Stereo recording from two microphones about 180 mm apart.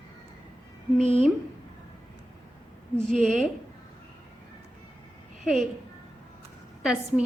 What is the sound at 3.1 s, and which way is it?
Speech, centre (ahead or behind).